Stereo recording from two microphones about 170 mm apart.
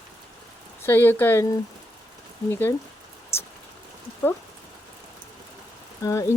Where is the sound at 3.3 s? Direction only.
15° left (ahead or behind).